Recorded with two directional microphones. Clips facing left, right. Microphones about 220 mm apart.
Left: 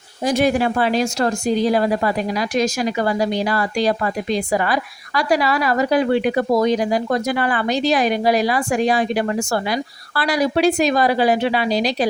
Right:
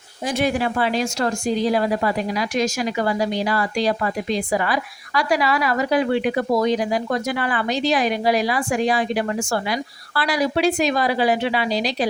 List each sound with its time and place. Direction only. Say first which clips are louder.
0.3 s speech: left 4 dB; 40° left (ahead or behind)